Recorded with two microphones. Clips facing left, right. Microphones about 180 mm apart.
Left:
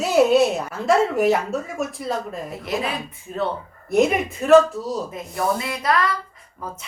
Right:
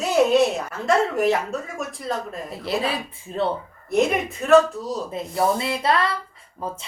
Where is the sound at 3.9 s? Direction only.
Centre (ahead or behind).